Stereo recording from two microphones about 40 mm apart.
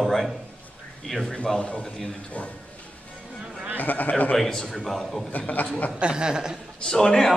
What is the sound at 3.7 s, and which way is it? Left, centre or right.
Speech, left.